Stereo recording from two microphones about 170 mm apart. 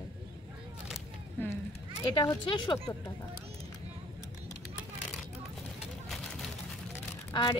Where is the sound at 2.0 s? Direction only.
25° left (ahead or behind).